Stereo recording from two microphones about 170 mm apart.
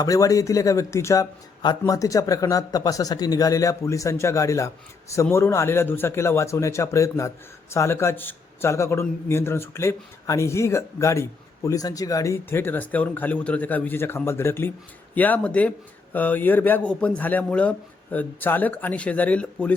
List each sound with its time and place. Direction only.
0.0 s speech: 20° left (ahead or behind)